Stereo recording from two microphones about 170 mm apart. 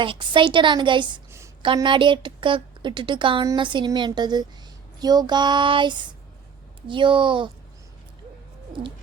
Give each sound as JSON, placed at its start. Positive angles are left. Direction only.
{"t": 0.0, "sound": "a woman's voice", "side_deg": -30}